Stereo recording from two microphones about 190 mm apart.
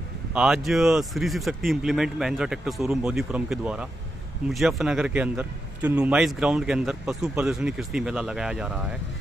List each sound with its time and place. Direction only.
0.3 s a man's voice: 5° right (ahead or behind)